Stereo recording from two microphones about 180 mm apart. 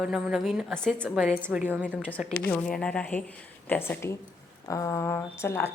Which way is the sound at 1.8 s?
5° left (ahead or behind).